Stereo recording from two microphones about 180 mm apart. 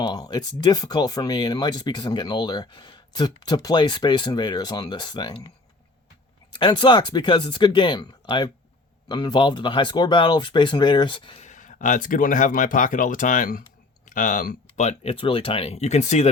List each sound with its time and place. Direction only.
0.0 s speech: 20° left (ahead or behind)
6.5 s speech: 25° left (ahead or behind)
11.4 s speech: 45° left (ahead or behind)